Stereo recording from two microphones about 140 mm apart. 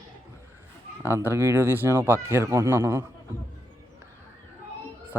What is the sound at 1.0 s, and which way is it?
Speech, 15° right (ahead or behind).